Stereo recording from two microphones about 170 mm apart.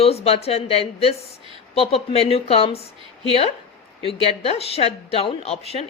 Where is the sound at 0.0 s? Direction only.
35° left (ahead or behind).